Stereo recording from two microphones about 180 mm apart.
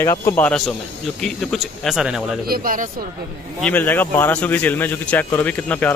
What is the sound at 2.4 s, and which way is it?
Speech, 55° right (ahead or behind).